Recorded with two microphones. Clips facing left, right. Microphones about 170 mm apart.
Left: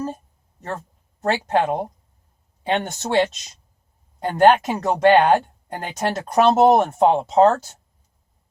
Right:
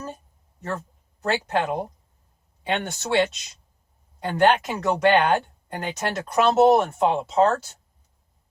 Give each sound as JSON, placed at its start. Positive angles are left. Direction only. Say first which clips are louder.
{"t": 1.2, "sound": "speech", "louder": "left 4 dB", "side_deg": 40}